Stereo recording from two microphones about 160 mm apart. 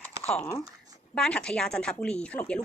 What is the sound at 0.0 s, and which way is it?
Computer keyboard, 10° left (ahead or behind).